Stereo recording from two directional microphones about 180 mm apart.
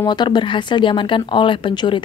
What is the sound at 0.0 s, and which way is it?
Speech, 25° left (ahead or behind).